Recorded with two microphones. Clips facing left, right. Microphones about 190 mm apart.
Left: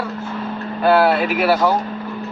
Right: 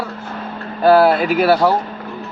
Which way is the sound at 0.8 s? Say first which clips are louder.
Right 4 dB; 35° right (ahead or behind).